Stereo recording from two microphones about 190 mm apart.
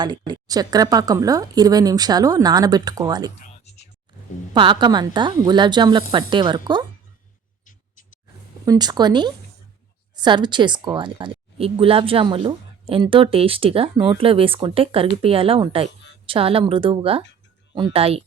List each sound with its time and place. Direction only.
0.0 s speech: 20° right (ahead or behind)
4.5 s speech: 25° right (ahead or behind)
8.6 s speech: 20° right (ahead or behind)